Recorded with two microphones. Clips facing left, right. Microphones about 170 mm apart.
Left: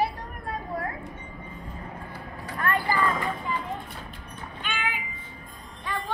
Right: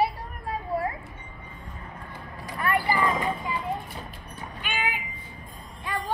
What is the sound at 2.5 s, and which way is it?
Vehicle, 10° right (ahead or behind).